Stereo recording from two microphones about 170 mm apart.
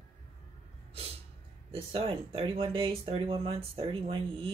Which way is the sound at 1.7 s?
35° right (ahead or behind).